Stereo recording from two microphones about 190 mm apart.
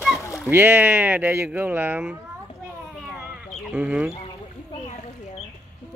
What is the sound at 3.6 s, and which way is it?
Speech, 5° right (ahead or behind).